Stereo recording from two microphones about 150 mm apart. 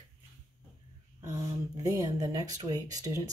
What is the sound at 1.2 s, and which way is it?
Speech, 20° right (ahead or behind).